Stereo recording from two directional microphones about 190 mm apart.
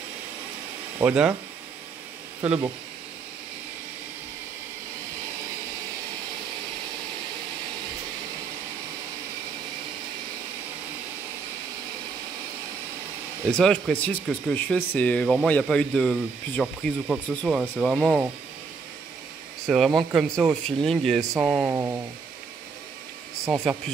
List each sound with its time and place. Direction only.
0.9 s speech: 5° right (ahead or behind)
2.4 s speech: 5° right (ahead or behind)
13.5 s speech: 5° left (ahead or behind)
19.6 s speech: centre (ahead or behind)
21.2 s speech: 15° right (ahead or behind)